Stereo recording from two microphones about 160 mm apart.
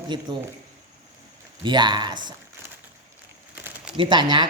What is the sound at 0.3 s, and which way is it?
Speech, 25° right (ahead or behind).